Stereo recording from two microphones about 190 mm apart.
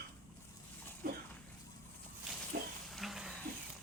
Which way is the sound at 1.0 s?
50° right (ahead or behind).